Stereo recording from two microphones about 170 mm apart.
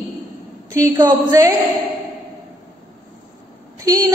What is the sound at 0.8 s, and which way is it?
Speech, 20° right (ahead or behind).